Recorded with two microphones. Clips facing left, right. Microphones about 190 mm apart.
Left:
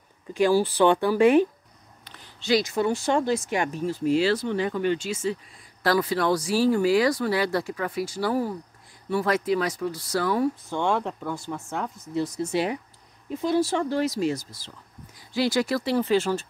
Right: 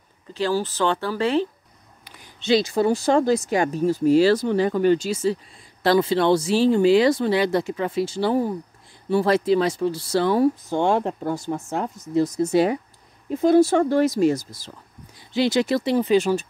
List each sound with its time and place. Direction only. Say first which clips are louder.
0.3 s speech: left 3 dB; 15° left (ahead or behind)
2.0 s a sound: right 2 dB; 10° right (ahead or behind)
2.4 s speech: right 4 dB; 30° right (ahead or behind); by 14.7 s 45° right (ahead or behind)
15.1 s speech: right 3 dB; 20° right (ahead or behind)